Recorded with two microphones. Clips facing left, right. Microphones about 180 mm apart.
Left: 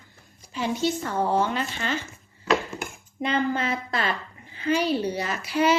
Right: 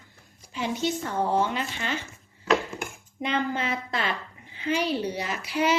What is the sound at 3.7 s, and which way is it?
Speech, 15° right (ahead or behind).